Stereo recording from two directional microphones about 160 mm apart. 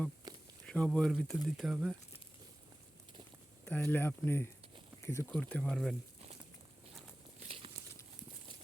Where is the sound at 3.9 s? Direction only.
15° left (ahead or behind).